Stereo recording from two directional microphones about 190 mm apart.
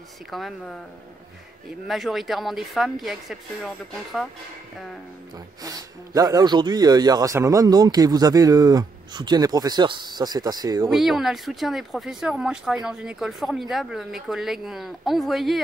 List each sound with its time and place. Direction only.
0.3 s speech: centre (ahead or behind)
1.9 s speech: centre (ahead or behind)
5.6 s speech: 20° right (ahead or behind)
10.9 s speech: centre (ahead or behind)